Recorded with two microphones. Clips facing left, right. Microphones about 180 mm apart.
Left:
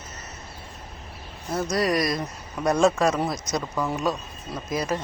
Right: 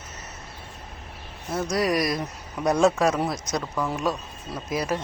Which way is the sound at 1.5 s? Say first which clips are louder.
Even; 5° right (ahead or behind).